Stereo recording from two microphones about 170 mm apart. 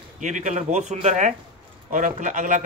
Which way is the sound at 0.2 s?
45° right (ahead or behind).